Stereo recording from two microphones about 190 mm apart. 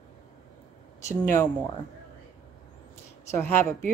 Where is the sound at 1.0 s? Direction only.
15° left (ahead or behind).